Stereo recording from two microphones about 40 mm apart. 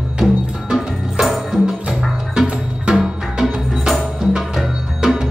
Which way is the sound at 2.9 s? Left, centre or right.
Centre.